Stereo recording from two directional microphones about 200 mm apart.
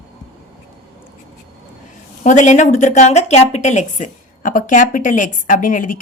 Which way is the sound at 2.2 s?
40° left (ahead or behind).